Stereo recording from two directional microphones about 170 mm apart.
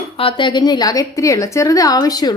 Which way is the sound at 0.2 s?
30° left (ahead or behind).